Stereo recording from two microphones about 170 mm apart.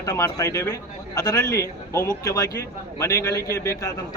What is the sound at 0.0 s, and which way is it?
A man's voice, 20° left (ahead or behind).